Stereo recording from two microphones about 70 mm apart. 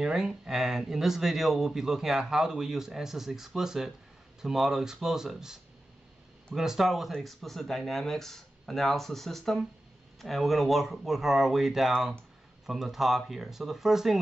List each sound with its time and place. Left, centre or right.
0.0 s speech: centre